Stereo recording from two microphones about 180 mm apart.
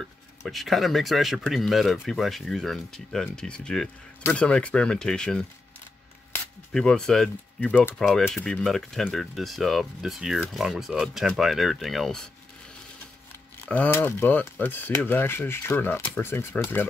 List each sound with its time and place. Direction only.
0.0 s speech: centre (ahead or behind)
6.7 s speech: 5° left (ahead or behind)
13.7 s speech: 10° left (ahead or behind)